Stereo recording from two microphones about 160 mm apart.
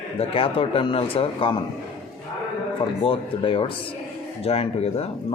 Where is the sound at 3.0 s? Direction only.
35° left (ahead or behind).